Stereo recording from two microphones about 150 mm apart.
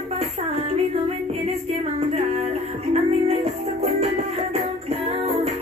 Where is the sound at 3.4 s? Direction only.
45° right (ahead or behind).